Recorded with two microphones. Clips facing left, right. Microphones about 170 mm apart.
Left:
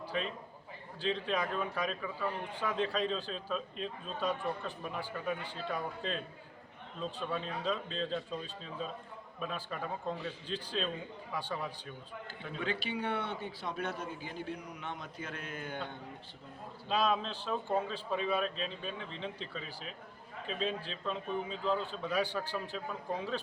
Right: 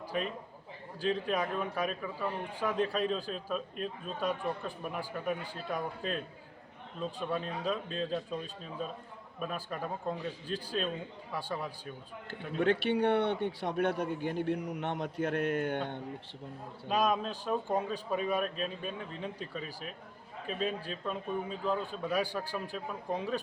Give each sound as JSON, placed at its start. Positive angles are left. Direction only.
{"t": 1.0, "sound": "a man's voice", "side_deg": -10}
{"t": 9.4, "sound": "a man's voice", "side_deg": -10}
{"t": 12.5, "sound": "a man's voice", "side_deg": -65}
{"t": 16.9, "sound": "a man's voice", "side_deg": -10}